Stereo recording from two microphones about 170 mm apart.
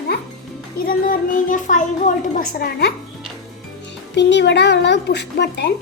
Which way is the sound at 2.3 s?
55° left (ahead or behind).